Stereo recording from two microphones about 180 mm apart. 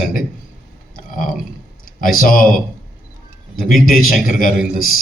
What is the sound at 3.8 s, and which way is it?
Speech, 50° left (ahead or behind).